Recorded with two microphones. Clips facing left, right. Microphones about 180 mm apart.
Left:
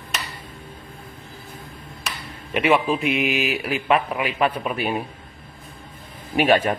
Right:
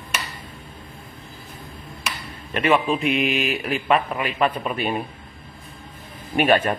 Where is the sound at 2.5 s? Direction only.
10° left (ahead or behind).